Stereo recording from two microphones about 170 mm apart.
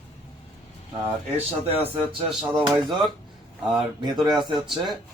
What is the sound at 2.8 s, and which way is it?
Speech, centre (ahead or behind).